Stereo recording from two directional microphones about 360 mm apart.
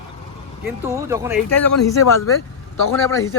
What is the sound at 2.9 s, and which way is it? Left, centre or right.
Speech, centre.